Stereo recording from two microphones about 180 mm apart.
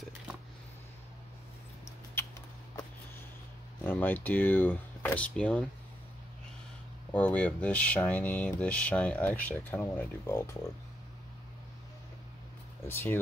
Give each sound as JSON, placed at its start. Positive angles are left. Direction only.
{"t": 2.1, "sound": "mouse", "side_deg": 20}
{"t": 3.8, "sound": "speech", "side_deg": 10}
{"t": 7.1, "sound": "speech", "side_deg": 10}
{"t": 12.8, "sound": "speech", "side_deg": 15}